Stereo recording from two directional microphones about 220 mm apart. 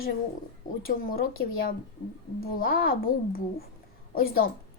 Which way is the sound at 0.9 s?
40° left (ahead or behind).